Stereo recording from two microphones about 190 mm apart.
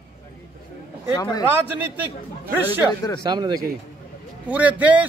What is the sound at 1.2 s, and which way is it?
Speech, 20° left (ahead or behind).